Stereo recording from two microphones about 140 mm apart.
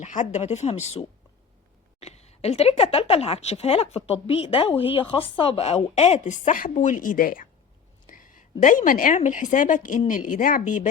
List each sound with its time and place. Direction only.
0.0 s a woman's voice: 60° left (ahead or behind)